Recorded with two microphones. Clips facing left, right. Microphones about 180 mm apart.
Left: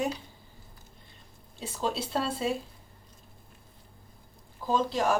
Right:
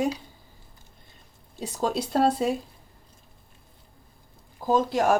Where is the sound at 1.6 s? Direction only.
45° right (ahead or behind).